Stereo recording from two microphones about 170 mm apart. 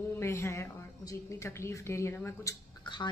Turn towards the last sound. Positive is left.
turn(degrees=25)  # may be behind; listen again after turning